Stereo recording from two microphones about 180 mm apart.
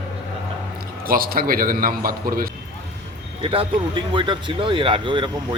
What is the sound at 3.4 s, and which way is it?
Speech, 30° right (ahead or behind).